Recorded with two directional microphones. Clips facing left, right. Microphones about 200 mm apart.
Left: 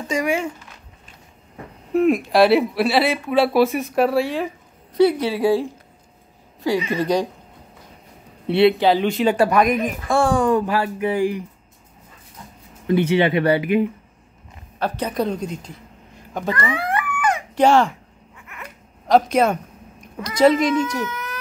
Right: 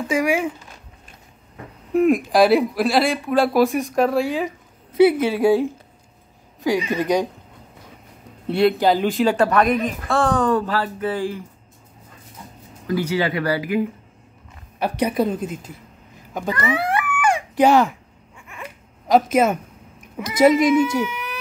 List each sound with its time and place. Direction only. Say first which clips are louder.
0.1 s speech: right 1 dB; centre (ahead or behind)
2.0 s speech: even; centre (ahead or behind)
6.6 s speech: even; 15° right (ahead or behind)
8.5 s speech: left 2 dB; centre (ahead or behind)
12.8 s speech: left 4 dB; 25° left (ahead or behind)
14.8 s speech: right 2 dB; 10° right (ahead or behind)
16.9 s a sound: right 1 dB; 10° right (ahead or behind)
18.6 s dog: right 4 dB; 5° right (ahead or behind)
20.2 s speech: right 1 dB; 5° right (ahead or behind)